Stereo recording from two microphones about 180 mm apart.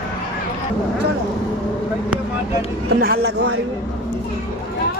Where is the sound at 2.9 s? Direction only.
55° right (ahead or behind).